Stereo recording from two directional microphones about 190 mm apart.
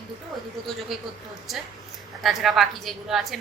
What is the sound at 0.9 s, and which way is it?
A woman's voice, centre (ahead or behind).